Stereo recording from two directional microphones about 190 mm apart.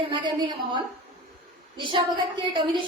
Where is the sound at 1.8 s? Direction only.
25° right (ahead or behind).